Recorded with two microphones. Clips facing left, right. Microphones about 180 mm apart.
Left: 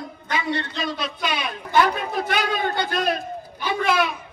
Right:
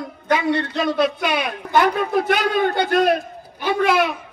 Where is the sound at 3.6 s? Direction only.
60° right (ahead or behind).